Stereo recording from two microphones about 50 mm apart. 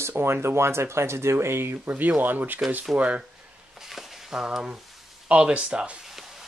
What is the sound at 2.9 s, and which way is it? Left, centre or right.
Speech, right.